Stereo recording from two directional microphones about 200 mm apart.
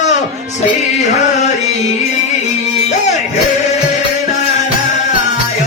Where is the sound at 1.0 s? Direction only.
35° left (ahead or behind).